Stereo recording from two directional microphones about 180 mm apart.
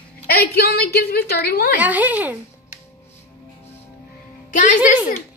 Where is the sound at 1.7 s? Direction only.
10° right (ahead or behind).